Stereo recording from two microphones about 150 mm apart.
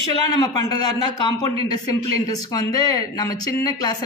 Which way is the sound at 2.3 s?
25° left (ahead or behind).